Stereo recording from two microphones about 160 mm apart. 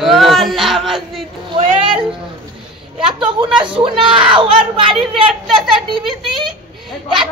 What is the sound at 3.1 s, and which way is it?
A woman's voice, 30° right (ahead or behind).